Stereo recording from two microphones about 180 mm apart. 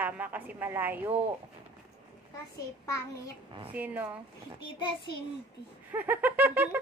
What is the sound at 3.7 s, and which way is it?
Speech, 10° right (ahead or behind).